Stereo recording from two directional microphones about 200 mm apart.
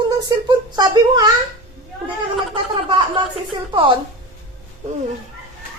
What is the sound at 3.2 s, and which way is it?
Speech, 25° right (ahead or behind).